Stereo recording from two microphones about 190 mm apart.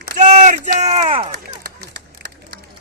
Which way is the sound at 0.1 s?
40° right (ahead or behind).